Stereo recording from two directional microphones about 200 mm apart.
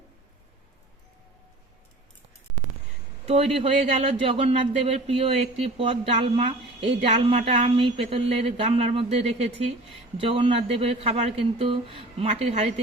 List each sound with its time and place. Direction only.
3.2 s speech: 30° right (ahead or behind)
10.2 s speech: 25° right (ahead or behind)